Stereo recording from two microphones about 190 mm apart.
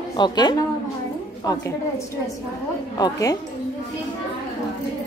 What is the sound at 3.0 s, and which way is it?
Speech, 20° left (ahead or behind).